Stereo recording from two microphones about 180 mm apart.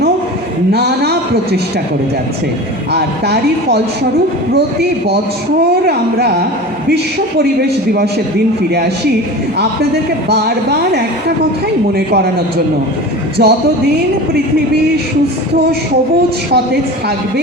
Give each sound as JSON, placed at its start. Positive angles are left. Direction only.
{"t": 0.7, "sound": "speech", "side_deg": -65}
{"t": 2.9, "sound": "speech", "side_deg": -65}
{"t": 10.2, "sound": "speech", "side_deg": -65}
{"t": 13.4, "sound": "speech", "side_deg": -60}